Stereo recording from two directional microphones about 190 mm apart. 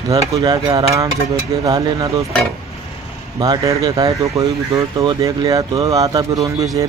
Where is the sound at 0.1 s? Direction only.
20° right (ahead or behind).